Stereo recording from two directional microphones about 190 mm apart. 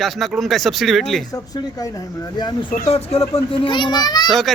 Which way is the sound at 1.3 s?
20° left (ahead or behind).